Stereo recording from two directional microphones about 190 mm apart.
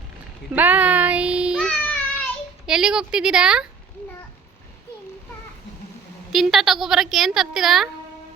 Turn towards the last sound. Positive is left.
turn(degrees=0)  # may be behind; listen again after turning